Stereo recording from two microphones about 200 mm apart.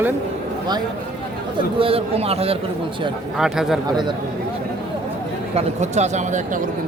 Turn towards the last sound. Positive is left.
turn(degrees=-35)  # may be behind; listen again after turning